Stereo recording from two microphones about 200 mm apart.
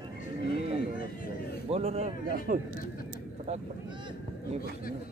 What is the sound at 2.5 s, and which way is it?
Speech, 40° right (ahead or behind).